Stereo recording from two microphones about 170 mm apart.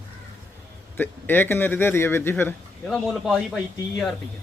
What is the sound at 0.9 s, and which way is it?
Speech, 10° left (ahead or behind).